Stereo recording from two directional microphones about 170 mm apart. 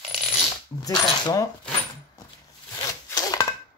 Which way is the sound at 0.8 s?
20° left (ahead or behind).